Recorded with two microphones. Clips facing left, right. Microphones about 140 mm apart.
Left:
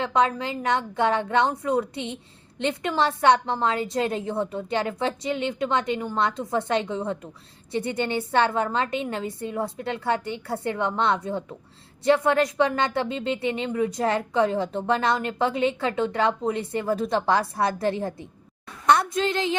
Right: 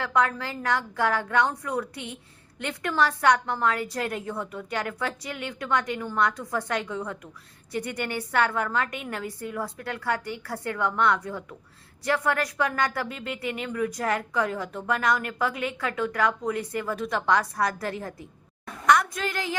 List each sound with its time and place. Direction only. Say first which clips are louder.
0.0 s a woman's voice: left 3 dB; 20° left (ahead or behind)